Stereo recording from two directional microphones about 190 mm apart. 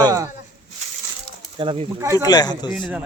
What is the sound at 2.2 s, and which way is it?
Speech, 20° left (ahead or behind).